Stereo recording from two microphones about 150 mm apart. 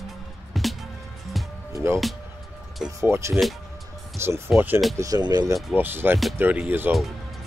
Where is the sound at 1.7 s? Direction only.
20° right (ahead or behind).